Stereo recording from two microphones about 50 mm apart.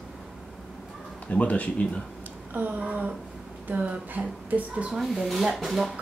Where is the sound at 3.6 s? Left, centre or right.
Right.